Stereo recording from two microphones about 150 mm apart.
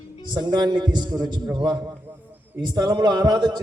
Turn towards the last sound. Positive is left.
turn(degrees=-30)  # may be behind; listen again after turning